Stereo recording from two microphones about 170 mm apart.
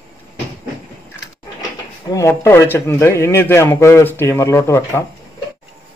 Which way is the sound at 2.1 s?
15° left (ahead or behind).